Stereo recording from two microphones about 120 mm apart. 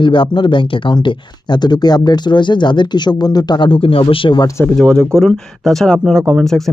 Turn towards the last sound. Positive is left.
turn(degrees=5)  # may be behind; listen again after turning